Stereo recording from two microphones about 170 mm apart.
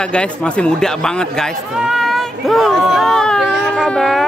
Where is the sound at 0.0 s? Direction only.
5° left (ahead or behind).